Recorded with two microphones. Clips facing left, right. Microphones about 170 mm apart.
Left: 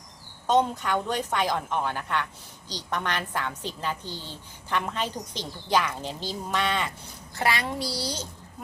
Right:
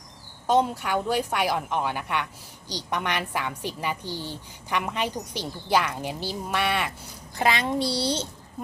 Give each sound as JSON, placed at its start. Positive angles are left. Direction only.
{"t": 0.4, "sound": "a woman's voice", "side_deg": -10}